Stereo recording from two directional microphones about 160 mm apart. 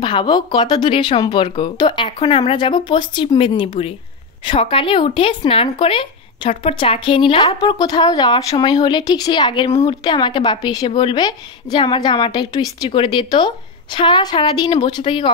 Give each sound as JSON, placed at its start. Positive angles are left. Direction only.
{"t": 0.0, "sound": "a woman's voice", "side_deg": 30}